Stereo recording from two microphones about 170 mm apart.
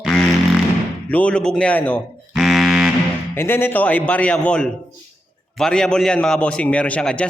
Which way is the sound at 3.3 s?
15° left (ahead or behind).